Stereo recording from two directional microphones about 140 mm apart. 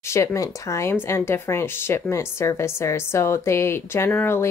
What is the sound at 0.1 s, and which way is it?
A woman's voice, 20° left (ahead or behind).